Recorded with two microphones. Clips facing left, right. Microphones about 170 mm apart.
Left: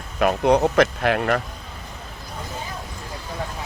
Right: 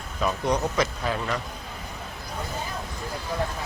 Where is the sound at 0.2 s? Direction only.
65° left (ahead or behind).